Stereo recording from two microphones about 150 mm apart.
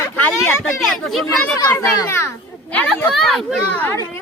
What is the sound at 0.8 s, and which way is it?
Speech, centre (ahead or behind).